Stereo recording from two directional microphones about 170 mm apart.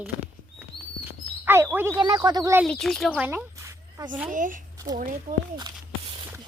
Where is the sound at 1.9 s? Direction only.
25° right (ahead or behind).